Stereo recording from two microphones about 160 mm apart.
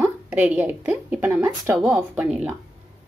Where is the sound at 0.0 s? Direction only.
10° right (ahead or behind).